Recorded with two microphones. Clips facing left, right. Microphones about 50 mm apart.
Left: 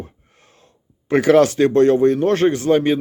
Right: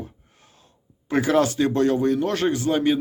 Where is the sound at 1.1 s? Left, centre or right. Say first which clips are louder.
Left 7 dB; left.